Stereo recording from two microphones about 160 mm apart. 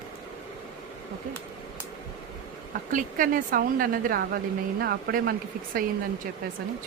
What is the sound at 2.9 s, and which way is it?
A woman's voice, 55° right (ahead or behind).